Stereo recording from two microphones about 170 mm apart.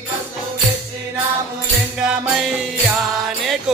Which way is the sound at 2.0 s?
5° right (ahead or behind).